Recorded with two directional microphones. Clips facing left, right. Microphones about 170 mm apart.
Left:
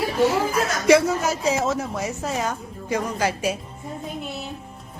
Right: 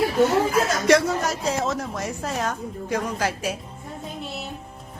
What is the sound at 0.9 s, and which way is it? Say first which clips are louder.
A woman's voice: left 4 dB; 5° left (ahead or behind).